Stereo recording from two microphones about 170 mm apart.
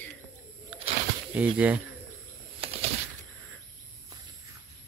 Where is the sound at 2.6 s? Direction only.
35° right (ahead or behind).